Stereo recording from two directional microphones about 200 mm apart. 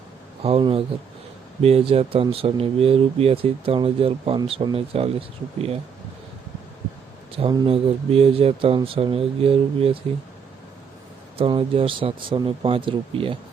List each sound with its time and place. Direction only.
0.4 s speech: 30° right (ahead or behind)
7.3 s speech: 25° right (ahead or behind)
11.3 s speech: 25° right (ahead or behind)